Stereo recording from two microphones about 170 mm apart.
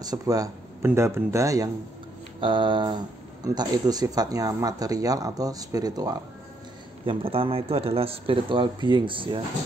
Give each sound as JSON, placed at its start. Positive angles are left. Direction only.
{"t": 0.0, "sound": "speech", "side_deg": -20}